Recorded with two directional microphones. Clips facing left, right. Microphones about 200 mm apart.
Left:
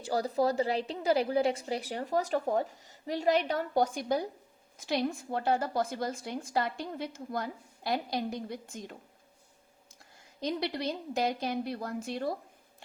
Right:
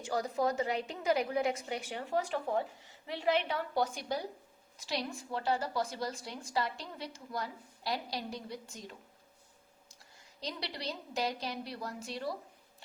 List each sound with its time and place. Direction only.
0.0 s a woman's voice: 35° left (ahead or behind); by 12.4 s 50° left (ahead or behind)